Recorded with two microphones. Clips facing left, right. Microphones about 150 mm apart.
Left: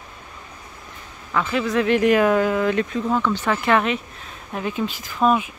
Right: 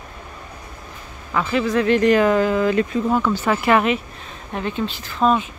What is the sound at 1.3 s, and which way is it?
Speech, centre (ahead or behind).